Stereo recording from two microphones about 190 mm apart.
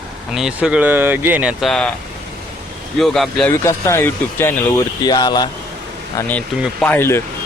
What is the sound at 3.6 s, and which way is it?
Speech, 15° left (ahead or behind).